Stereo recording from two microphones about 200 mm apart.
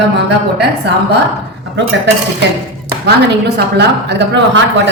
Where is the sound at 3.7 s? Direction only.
55° right (ahead or behind).